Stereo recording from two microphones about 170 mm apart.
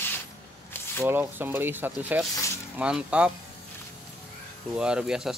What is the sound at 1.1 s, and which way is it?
Speech, 10° right (ahead or behind).